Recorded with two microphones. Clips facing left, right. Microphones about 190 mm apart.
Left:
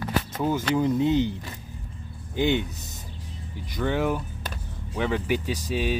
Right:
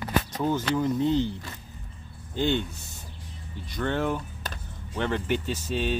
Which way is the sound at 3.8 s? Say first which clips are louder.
Left 2 dB; 10° left (ahead or behind).